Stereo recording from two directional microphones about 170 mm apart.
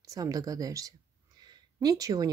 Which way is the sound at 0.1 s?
20° right (ahead or behind).